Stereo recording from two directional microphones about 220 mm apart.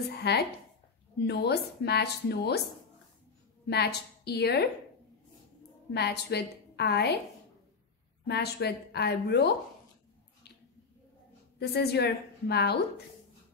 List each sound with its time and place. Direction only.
0.2 s a woman's voice: 45° left (ahead or behind)
3.6 s a woman's voice: 50° left (ahead or behind)
5.9 s a woman's voice: 50° left (ahead or behind)
8.3 s a woman's voice: 50° left (ahead or behind)
11.6 s a woman's voice: 45° left (ahead or behind)